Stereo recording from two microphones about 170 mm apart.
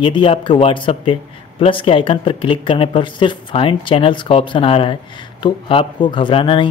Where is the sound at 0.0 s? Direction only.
30° left (ahead or behind).